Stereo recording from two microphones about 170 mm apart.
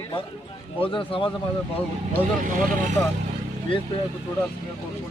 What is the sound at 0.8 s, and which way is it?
Speech, 30° left (ahead or behind).